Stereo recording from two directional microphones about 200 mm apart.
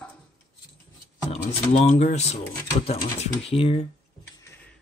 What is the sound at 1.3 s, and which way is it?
Speech, 35° left (ahead or behind).